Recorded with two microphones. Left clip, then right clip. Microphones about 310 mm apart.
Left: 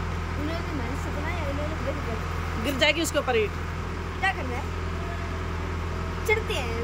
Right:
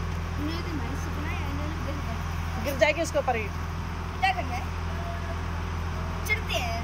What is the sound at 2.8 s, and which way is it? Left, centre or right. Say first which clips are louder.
Speech: even; centre.